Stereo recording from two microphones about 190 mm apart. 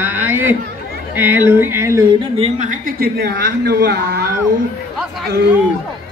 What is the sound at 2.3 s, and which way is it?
Speech, 35° right (ahead or behind).